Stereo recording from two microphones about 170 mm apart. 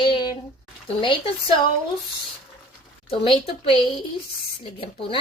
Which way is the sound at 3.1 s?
30° left (ahead or behind).